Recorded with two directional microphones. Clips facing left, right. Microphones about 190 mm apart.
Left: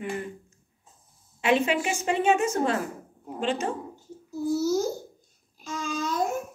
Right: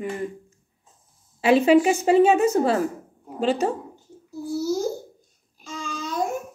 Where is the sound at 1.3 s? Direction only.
35° right (ahead or behind).